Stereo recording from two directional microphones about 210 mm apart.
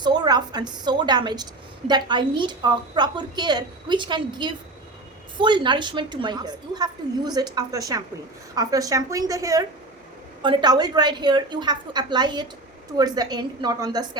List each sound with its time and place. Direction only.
0.0 s a woman's voice: 20° right (ahead or behind)